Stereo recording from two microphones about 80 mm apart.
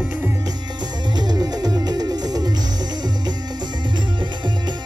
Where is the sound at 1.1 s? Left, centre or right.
Right.